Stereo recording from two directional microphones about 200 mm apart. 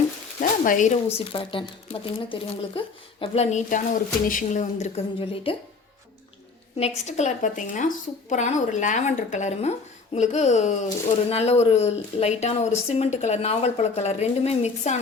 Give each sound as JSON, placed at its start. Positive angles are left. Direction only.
{"t": 0.3, "sound": "speech", "side_deg": 40}
{"t": 5.3, "sound": "speech", "side_deg": 25}
{"t": 6.7, "sound": "speech", "side_deg": 30}